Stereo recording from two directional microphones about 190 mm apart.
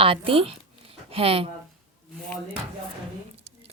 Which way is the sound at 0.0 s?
30° right (ahead or behind).